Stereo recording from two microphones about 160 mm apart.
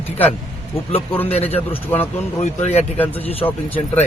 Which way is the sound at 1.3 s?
40° left (ahead or behind).